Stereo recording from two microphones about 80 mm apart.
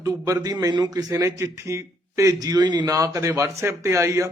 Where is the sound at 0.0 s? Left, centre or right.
Right.